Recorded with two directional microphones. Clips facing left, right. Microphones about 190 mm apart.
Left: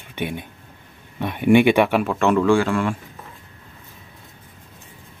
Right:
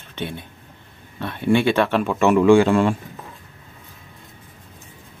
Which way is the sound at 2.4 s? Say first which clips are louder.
Right 4 dB; 20° right (ahead or behind).